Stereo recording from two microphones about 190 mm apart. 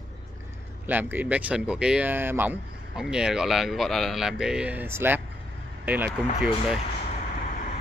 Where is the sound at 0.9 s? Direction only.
10° right (ahead or behind).